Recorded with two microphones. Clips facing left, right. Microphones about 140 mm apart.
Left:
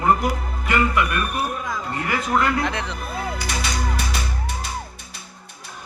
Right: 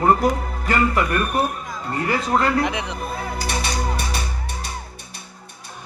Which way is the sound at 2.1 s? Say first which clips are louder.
Right 1 dB; 30° right (ahead or behind).